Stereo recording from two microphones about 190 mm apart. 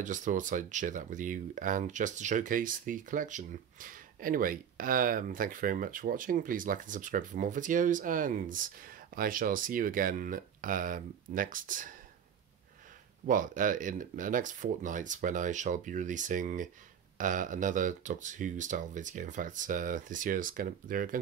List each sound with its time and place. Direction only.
0.0 s speech: 40° right (ahead or behind)
13.3 s speech: 45° right (ahead or behind)